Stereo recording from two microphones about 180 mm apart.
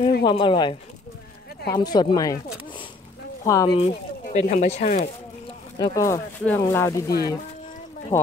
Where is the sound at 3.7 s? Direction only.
35° left (ahead or behind).